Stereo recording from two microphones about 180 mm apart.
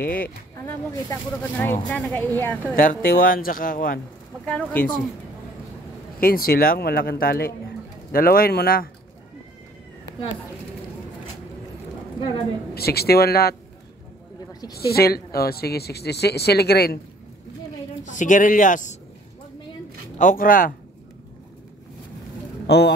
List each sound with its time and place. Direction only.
0.0 s speech: 55° left (ahead or behind)
0.6 s speech: 15° left (ahead or behind)
2.8 s speech: 50° left (ahead or behind)
4.5 s speech: 5° left (ahead or behind)
6.1 s a woman's voice: 55° left (ahead or behind)
12.7 s a woman's voice: 60° left (ahead or behind)
14.7 s a woman's voice: 60° left (ahead or behind)
18.0 s speech: 45° left (ahead or behind)
20.2 s speech: 50° left (ahead or behind)
22.7 s a man's voice: 70° left (ahead or behind)